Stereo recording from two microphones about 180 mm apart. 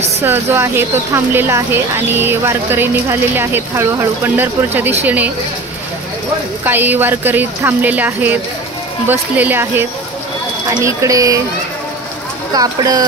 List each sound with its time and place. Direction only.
0.2 s speech: 10° right (ahead or behind)
6.6 s speech: 10° right (ahead or behind)
12.5 s speech: 20° right (ahead or behind)